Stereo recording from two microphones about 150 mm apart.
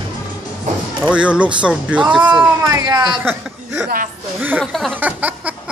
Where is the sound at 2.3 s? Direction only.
25° right (ahead or behind).